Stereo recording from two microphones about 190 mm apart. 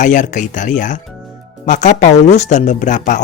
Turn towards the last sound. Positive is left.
turn(degrees=40)  # may be behind; listen again after turning